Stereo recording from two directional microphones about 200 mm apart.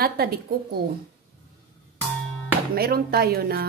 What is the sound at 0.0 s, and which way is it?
Speech, 50° right (ahead or behind).